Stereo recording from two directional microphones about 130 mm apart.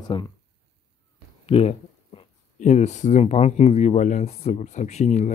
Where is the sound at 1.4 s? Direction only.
50° left (ahead or behind).